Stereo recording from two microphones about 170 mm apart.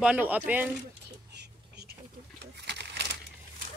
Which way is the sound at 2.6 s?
90° right.